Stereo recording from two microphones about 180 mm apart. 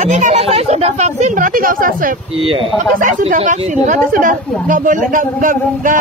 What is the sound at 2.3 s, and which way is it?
Speech, 30° right (ahead or behind).